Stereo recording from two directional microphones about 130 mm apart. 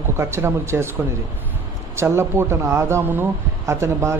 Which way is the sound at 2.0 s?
20° right (ahead or behind).